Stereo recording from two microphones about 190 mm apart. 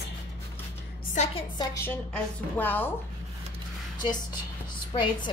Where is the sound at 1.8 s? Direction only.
10° left (ahead or behind).